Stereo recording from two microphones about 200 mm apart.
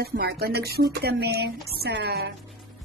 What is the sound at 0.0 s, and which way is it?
Speech, 50° right (ahead or behind).